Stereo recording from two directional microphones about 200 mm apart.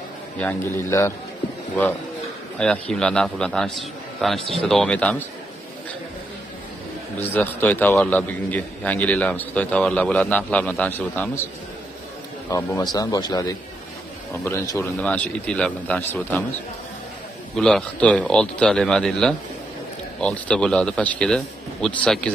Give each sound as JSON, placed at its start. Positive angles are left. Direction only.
{"t": 0.4, "sound": "a man's voice", "side_deg": 10}
{"t": 2.6, "sound": "a man's voice", "side_deg": 5}
{"t": 7.2, "sound": "a man's voice", "side_deg": 10}
{"t": 12.4, "sound": "a man's voice", "side_deg": 15}
{"t": 17.6, "sound": "a man's voice", "side_deg": 5}